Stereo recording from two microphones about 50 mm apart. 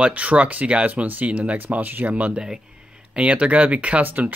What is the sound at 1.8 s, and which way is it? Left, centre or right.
Speech, right.